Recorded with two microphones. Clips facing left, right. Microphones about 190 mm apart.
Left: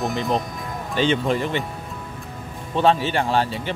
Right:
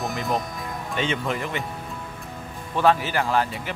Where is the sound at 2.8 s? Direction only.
25° left (ahead or behind).